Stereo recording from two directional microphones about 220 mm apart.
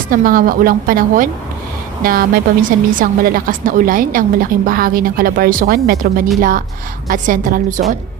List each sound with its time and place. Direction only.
0.1 s a woman's voice: 40° right (ahead or behind)